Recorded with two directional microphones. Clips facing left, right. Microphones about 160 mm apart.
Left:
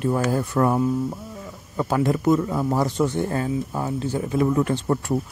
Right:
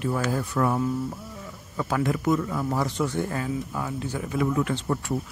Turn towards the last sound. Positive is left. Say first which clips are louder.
# left 4 dB
turn(degrees=40)  # may be behind; listen again after turning